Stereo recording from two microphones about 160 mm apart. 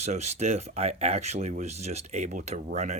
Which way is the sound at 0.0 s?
45° right (ahead or behind).